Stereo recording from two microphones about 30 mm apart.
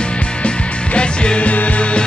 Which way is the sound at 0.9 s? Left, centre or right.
Left.